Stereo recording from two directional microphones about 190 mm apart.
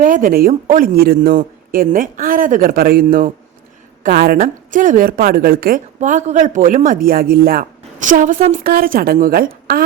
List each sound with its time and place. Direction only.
0.0 s a woman's voice: 45° right (ahead or behind)